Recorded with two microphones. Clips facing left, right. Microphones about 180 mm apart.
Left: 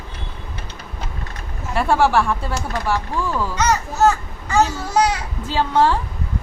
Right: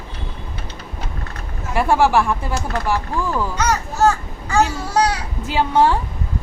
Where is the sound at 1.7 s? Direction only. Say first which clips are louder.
Right 1 dB; 10° right (ahead or behind).